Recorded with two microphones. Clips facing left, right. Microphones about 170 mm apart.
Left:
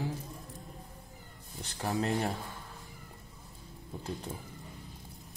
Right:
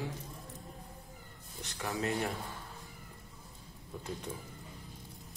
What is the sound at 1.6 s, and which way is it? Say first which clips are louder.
Speech: left 3 dB; 35° left (ahead or behind).